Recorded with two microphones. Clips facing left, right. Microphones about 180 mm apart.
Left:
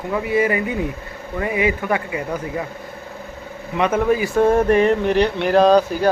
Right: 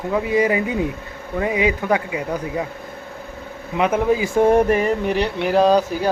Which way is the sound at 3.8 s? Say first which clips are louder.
Even; 15° right (ahead or behind).